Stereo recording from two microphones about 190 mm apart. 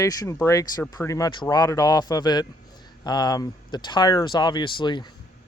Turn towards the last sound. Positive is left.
turn(degrees=25)  # may be behind; listen again after turning